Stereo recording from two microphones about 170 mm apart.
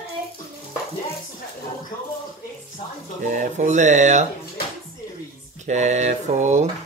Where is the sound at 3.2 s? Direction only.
50° right (ahead or behind).